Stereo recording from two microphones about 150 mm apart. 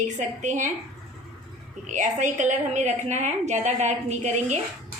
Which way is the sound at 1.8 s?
55° right (ahead or behind).